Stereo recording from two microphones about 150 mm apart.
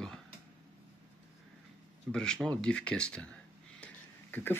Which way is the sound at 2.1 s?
5° left (ahead or behind).